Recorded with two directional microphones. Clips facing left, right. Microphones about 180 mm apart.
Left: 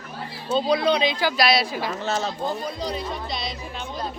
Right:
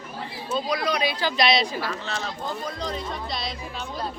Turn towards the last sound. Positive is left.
turn(degrees=0)  # may be behind; listen again after turning